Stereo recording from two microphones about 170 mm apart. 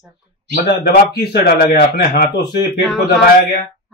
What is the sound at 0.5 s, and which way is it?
Speech, 65° left (ahead or behind).